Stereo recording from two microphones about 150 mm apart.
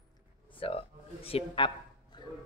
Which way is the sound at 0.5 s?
40° left (ahead or behind).